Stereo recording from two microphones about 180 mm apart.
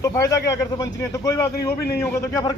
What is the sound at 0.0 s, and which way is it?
Speech, 15° left (ahead or behind).